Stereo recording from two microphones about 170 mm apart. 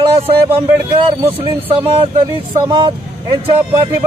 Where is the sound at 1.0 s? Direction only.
35° right (ahead or behind).